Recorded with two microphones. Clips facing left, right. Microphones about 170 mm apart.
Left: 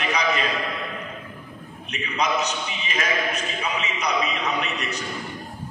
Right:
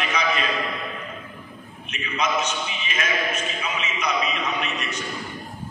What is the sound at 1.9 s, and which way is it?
A man's voice, 40° left (ahead or behind).